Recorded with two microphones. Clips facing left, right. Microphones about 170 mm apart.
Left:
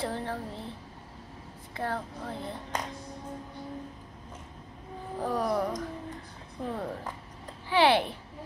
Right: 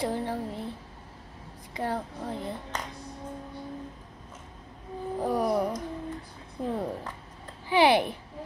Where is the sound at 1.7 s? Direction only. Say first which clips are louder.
Right 2 dB; 15° right (ahead or behind).